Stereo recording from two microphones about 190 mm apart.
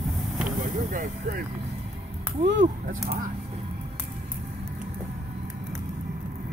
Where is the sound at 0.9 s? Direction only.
45° right (ahead or behind).